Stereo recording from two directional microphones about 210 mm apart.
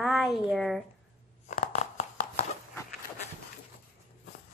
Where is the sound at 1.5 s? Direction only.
35° left (ahead or behind).